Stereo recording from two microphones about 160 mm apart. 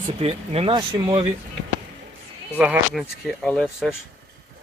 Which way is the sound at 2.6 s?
5° right (ahead or behind).